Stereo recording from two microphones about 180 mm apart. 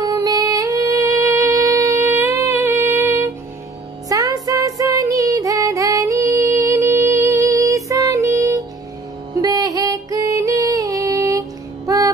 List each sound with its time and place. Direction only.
0.0 s music: 20° right (ahead or behind)